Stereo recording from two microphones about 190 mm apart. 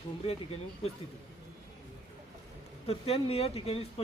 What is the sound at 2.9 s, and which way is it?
Speech, 30° left (ahead or behind).